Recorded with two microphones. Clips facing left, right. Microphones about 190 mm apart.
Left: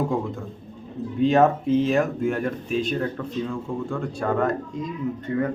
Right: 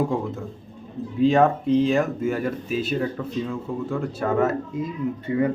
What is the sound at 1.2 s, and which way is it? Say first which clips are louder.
Speech: even; centre (ahead or behind).